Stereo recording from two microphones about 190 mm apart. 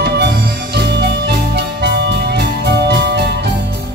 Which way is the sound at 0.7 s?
60° right (ahead or behind).